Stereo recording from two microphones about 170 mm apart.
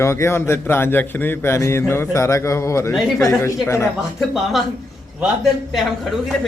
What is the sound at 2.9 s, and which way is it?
Speech, centre (ahead or behind).